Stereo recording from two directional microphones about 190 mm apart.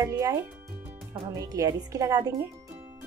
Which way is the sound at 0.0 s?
15° right (ahead or behind).